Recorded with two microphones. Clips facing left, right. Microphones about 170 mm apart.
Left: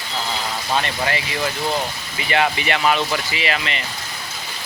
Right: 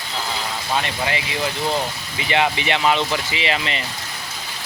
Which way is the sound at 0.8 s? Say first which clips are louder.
Left 1 dB; 15° right (ahead or behind).